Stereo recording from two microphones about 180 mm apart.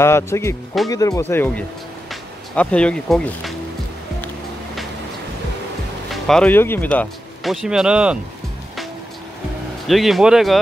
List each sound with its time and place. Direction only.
0.0 s speech: 15° left (ahead or behind)
6.2 s a man's voice: 5° left (ahead or behind)
9.8 s a man's voice: centre (ahead or behind)